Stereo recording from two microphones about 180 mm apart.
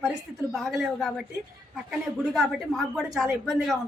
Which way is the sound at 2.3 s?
5° right (ahead or behind).